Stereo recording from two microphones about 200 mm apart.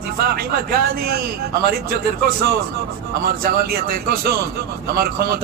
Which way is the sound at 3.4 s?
50° right (ahead or behind).